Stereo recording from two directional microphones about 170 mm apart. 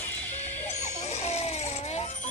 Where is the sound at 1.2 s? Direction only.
40° left (ahead or behind).